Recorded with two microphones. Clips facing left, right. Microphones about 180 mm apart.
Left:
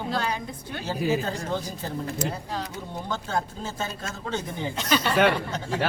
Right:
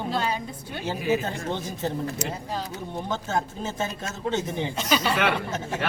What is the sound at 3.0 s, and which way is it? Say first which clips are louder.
Speech: right 1 dB; 20° right (ahead or behind).